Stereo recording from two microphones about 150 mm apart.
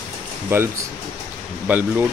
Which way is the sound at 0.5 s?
15° right (ahead or behind).